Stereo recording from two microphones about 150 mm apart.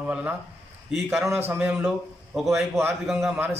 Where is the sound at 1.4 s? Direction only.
10° right (ahead or behind).